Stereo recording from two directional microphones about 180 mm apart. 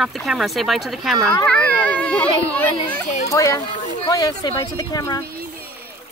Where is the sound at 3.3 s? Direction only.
15° left (ahead or behind).